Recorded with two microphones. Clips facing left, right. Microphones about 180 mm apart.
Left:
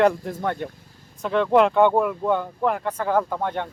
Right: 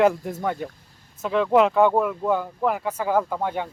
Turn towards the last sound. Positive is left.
turn(degrees=-5)  # may be behind; listen again after turning